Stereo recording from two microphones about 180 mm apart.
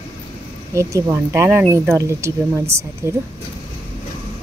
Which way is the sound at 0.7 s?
15° right (ahead or behind).